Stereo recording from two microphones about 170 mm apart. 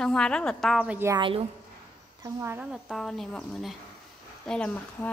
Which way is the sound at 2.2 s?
15° right (ahead or behind).